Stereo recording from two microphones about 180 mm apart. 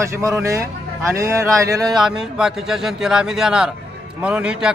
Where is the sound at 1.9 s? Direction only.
Centre (ahead or behind).